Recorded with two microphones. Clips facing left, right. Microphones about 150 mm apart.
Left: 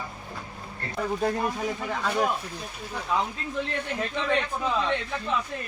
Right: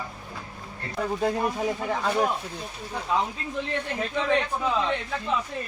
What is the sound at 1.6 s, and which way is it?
Speech, 25° right (ahead or behind).